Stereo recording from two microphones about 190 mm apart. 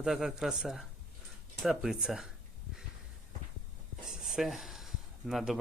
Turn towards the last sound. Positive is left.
turn(degrees=0)  # may be behind; listen again after turning